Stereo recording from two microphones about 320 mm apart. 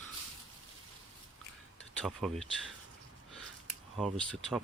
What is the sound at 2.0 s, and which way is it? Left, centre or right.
Speech, centre.